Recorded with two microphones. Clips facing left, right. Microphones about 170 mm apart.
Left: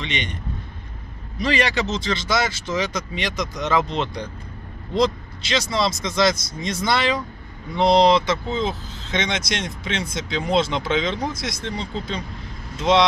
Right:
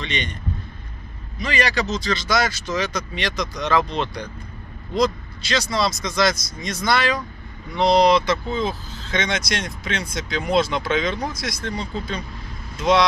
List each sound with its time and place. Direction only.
0.0 s speech: 20° left (ahead or behind)
1.4 s speech: 30° left (ahead or behind)